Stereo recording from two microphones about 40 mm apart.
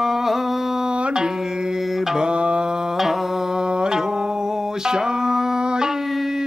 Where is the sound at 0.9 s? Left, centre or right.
Right.